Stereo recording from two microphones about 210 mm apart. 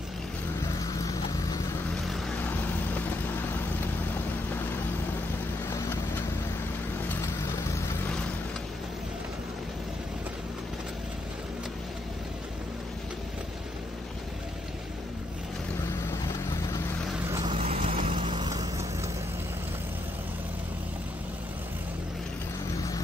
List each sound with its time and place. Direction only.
5.7 s vehicle: 15° left (ahead or behind)
17.5 s vehicle: 30° right (ahead or behind)